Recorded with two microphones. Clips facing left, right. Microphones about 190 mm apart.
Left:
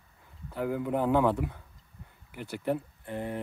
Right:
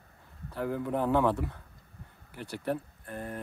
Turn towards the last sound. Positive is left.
turn(degrees=20)  # may be behind; listen again after turning